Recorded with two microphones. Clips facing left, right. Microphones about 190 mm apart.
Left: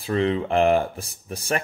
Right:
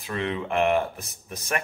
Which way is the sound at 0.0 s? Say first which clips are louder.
Left 7 dB; 30° left (ahead or behind).